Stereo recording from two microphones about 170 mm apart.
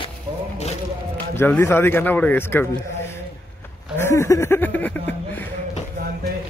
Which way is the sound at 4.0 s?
15° left (ahead or behind).